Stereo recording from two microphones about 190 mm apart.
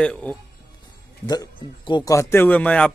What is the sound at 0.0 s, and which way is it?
Speech, 5° left (ahead or behind).